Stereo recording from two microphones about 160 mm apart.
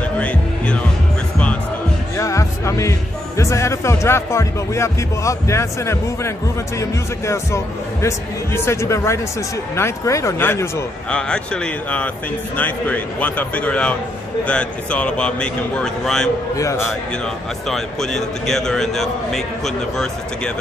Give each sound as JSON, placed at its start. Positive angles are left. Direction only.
{"t": 0.2, "sound": "music", "side_deg": 10}
{"t": 2.1, "sound": "speech", "side_deg": 20}
{"t": 16.5, "sound": "speech", "side_deg": 20}
{"t": 17.6, "sound": "speech", "side_deg": 0}